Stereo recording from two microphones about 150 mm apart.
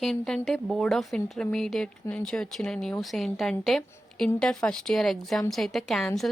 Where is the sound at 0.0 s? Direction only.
5° left (ahead or behind).